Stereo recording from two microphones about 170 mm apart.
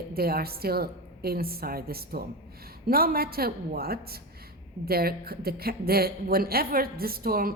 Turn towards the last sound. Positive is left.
turn(degrees=-60)  # may be behind; listen again after turning